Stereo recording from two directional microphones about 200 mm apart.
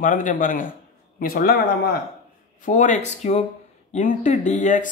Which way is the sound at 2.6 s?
40° left (ahead or behind).